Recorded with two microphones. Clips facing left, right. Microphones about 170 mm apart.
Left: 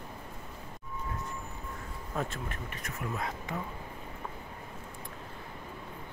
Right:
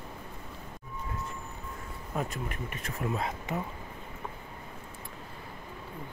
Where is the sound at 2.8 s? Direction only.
25° right (ahead or behind).